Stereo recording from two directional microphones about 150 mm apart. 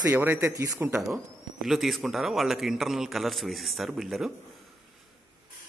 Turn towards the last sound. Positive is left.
turn(degrees=0)  # may be behind; listen again after turning